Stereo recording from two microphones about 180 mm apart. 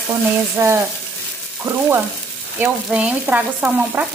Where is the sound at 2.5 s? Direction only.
10° right (ahead or behind).